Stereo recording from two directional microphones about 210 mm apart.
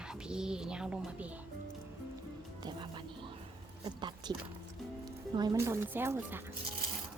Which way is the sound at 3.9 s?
20° right (ahead or behind).